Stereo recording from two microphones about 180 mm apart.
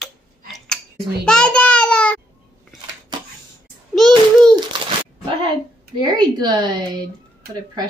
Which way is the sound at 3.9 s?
Centre (ahead or behind).